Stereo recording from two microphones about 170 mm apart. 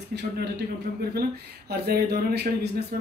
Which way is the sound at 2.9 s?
60° right (ahead or behind).